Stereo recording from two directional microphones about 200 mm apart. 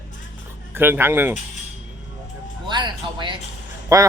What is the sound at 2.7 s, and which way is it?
Music, 20° right (ahead or behind).